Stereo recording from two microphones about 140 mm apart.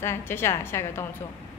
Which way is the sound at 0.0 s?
15° left (ahead or behind).